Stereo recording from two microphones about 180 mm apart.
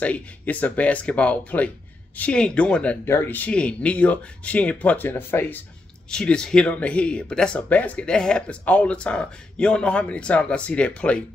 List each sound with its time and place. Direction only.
0.0 s speech: 10° left (ahead or behind)